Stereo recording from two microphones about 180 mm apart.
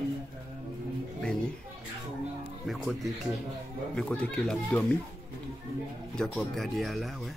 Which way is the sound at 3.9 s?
5° left (ahead or behind).